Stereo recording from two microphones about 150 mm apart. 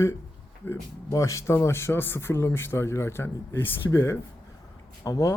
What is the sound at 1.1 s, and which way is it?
Speech, 20° left (ahead or behind).